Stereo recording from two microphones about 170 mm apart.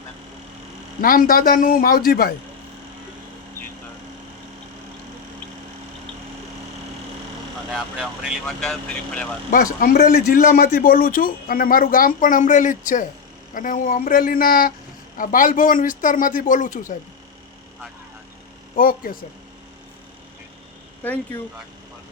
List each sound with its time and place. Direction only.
1.0 s a man's voice: 55° left (ahead or behind)
7.7 s speech: 5° right (ahead or behind)
9.8 s a man's voice: 55° left (ahead or behind)
18.8 s a man's voice: 55° left (ahead or behind)
21.0 s speech: 10° left (ahead or behind)